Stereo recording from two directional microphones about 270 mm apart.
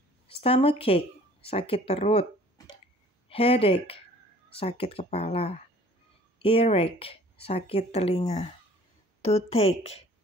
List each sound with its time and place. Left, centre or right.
0.3 s a woman's voice: left